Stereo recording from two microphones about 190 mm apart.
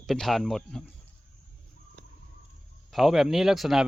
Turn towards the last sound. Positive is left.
turn(degrees=0)  # may be behind; listen again after turning